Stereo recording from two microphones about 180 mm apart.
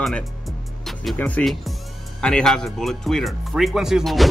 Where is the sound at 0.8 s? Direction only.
5° left (ahead or behind).